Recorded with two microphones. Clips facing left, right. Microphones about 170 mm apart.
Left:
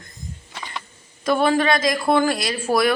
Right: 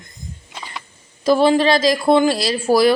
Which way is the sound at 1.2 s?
30° right (ahead or behind).